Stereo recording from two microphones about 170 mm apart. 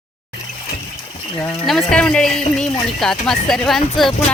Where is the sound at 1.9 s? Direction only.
5° left (ahead or behind).